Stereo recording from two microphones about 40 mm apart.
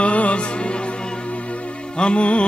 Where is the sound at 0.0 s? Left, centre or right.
Left.